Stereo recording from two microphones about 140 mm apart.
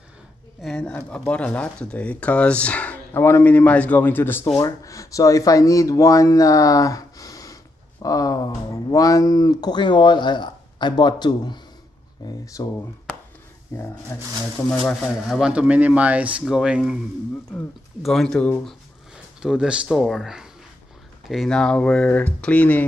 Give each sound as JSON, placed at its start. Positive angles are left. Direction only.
{"t": 0.6, "sound": "speech", "side_deg": 5}
{"t": 15.2, "sound": "speech", "side_deg": -5}
{"t": 18.0, "sound": "speech", "side_deg": 5}
{"t": 19.4, "sound": "speech", "side_deg": -5}